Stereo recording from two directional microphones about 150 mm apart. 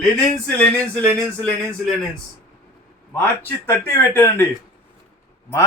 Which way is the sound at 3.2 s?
15° left (ahead or behind).